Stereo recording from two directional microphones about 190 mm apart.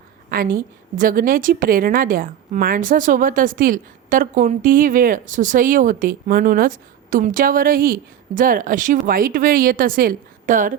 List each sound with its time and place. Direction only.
0.3 s a woman's voice: 50° right (ahead or behind)